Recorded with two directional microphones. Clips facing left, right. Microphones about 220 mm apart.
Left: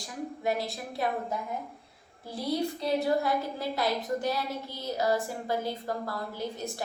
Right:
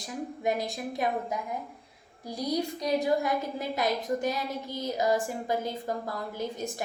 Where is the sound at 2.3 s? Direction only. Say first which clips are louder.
Even; 15° right (ahead or behind).